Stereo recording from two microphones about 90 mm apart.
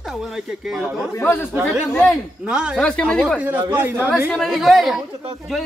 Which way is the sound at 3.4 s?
20° right (ahead or behind).